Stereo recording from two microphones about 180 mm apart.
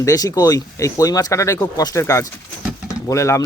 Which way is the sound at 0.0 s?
20° left (ahead or behind).